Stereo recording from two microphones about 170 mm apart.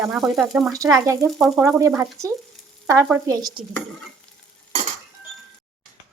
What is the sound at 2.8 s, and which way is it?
Frying, 15° right (ahead or behind).